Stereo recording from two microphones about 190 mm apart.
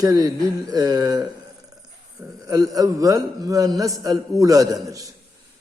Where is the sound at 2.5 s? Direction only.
20° right (ahead or behind).